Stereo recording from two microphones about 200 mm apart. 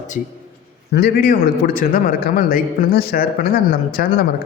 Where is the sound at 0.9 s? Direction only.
50° left (ahead or behind).